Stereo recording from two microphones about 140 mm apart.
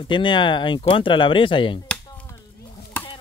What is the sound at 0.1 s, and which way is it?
Speech, 35° left (ahead or behind).